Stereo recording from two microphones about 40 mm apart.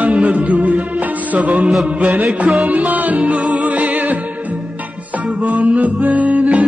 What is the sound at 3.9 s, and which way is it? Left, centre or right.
Music, right.